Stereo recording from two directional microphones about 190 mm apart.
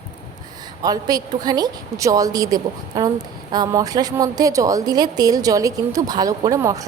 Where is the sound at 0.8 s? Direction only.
20° right (ahead or behind).